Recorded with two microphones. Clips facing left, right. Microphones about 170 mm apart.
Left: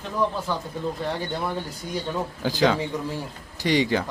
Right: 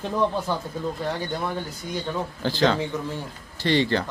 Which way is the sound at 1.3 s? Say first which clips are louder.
Even; centre (ahead or behind).